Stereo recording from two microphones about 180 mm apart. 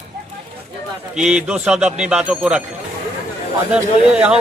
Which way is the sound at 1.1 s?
5° right (ahead or behind).